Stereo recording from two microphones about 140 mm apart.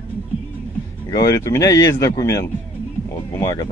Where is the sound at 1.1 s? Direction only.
25° left (ahead or behind).